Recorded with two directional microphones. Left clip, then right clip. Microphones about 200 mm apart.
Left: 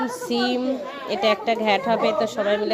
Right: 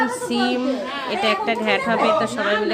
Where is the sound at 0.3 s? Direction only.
20° left (ahead or behind).